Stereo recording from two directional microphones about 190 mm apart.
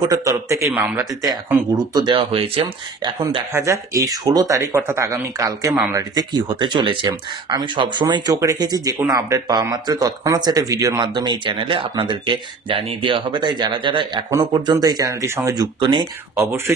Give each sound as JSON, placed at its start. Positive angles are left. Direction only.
{"t": 0.0, "sound": "speech", "side_deg": -15}